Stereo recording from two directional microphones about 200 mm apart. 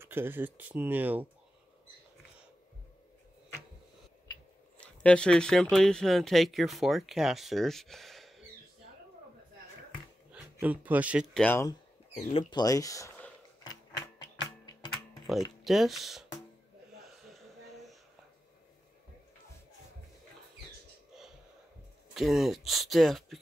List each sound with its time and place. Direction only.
0.0 s speech: 10° right (ahead or behind)
4.7 s speech: 5° left (ahead or behind)
10.3 s speech: 10° right (ahead or behind)
11.4 s speech: 10° left (ahead or behind)
12.2 s a sound: 30° left (ahead or behind)
15.6 s speech: centre (ahead or behind)
22.1 s speech: centre (ahead or behind)